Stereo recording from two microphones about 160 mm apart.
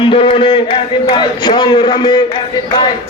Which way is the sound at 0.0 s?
30° left (ahead or behind).